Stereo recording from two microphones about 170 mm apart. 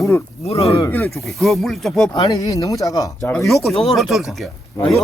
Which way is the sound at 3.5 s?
Centre (ahead or behind).